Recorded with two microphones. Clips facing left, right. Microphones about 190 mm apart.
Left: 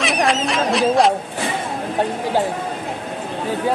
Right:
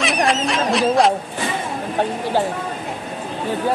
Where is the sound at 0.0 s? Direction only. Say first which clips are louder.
Even; centre (ahead or behind).